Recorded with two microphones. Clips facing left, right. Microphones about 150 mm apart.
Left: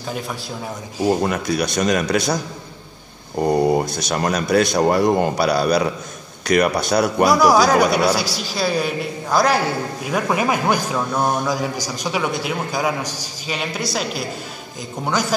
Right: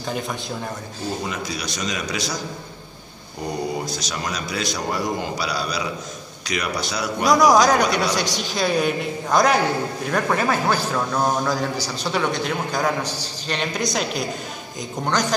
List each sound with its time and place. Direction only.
0.0 s a man's voice: 5° left (ahead or behind)
1.2 s a man's voice: 55° left (ahead or behind)
3.3 s a man's voice: 55° left (ahead or behind)
7.2 s a man's voice: 5° left (ahead or behind)